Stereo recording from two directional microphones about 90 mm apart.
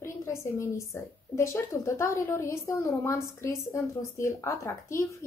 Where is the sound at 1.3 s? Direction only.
30° left (ahead or behind).